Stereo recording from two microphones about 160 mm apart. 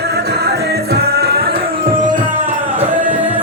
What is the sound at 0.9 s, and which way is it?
Music, 80° right.